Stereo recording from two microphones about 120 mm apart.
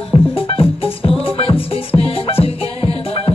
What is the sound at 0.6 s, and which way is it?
Music, 50° left (ahead or behind).